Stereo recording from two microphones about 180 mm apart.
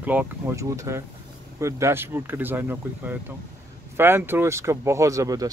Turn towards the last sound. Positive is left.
turn(degrees=-20)  # may be behind; listen again after turning